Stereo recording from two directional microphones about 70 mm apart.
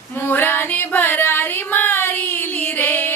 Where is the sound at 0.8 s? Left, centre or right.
Left.